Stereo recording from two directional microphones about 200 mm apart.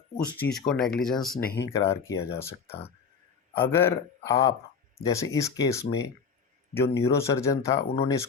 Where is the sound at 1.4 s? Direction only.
50° left (ahead or behind).